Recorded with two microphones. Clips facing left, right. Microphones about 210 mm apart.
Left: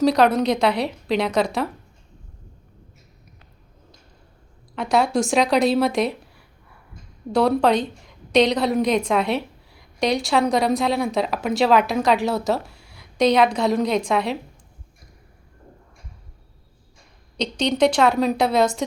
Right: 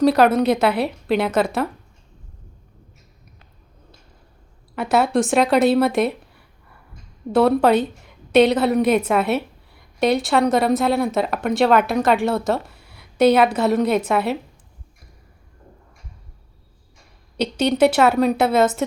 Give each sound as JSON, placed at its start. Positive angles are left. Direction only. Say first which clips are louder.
{"t": 0.0, "sound": "a woman's voice", "louder": "right 2 dB", "side_deg": -5}
{"t": 4.7, "sound": "a woman's voice", "louder": "right 2 dB", "side_deg": -5}
{"t": 17.3, "sound": "a woman's voice", "louder": "right 3 dB", "side_deg": -5}